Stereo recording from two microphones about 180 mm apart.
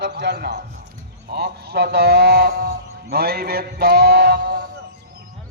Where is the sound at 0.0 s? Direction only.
70° right (ahead or behind).